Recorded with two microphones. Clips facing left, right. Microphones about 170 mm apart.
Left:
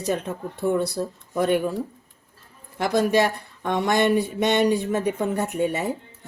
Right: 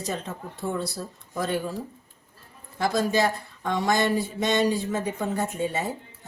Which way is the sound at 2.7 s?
60° left (ahead or behind).